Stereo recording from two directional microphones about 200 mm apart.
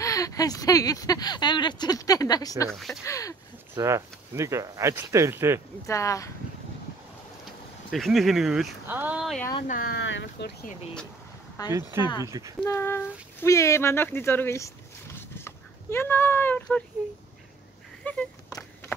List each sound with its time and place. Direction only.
0.0 s speech: 15° left (ahead or behind)
2.7 s speech: centre (ahead or behind)
3.1 s speech: 15° left (ahead or behind)
3.7 s speech: 15° right (ahead or behind)
5.9 s speech: 15° left (ahead or behind)
7.9 s speech: centre (ahead or behind)
9.7 s speech: 45° left (ahead or behind)
9.9 s speech: 65° left (ahead or behind)
11.6 s speech: 20° left (ahead or behind)
12.3 s speech: 15° right (ahead or behind)
12.6 s speech: 15° left (ahead or behind)
15.1 s horse: 10° left (ahead or behind)
18.1 s a sound: 10° left (ahead or behind)